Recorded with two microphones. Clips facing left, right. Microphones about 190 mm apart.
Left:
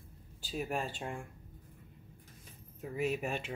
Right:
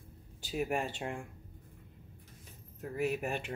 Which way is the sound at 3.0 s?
10° right (ahead or behind).